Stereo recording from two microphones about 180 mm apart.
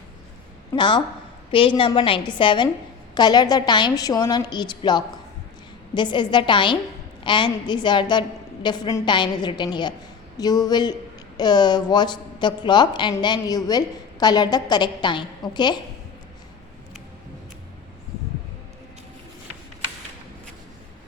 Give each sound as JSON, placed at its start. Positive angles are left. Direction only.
{"t": 0.8, "sound": "a woman's voice", "side_deg": 25}